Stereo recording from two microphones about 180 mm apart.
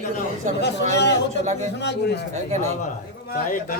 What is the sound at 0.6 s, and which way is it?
Speech, 70° left (ahead or behind).